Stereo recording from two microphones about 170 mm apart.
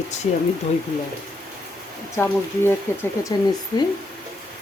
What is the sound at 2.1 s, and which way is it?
Speech, 15° left (ahead or behind).